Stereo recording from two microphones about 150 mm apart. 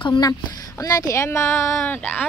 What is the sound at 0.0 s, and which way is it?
Speech, 30° left (ahead or behind).